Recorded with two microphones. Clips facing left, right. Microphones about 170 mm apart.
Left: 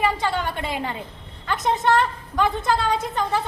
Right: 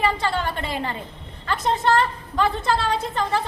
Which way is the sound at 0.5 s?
15° left (ahead or behind).